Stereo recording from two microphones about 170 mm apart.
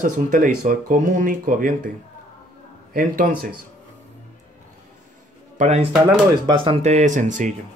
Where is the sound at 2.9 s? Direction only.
55° right (ahead or behind).